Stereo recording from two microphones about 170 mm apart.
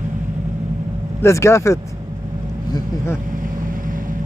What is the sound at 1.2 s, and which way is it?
Speech, 15° left (ahead or behind).